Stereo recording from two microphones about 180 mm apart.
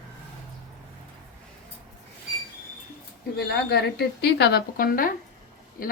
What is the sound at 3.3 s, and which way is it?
A woman's voice, 65° left (ahead or behind).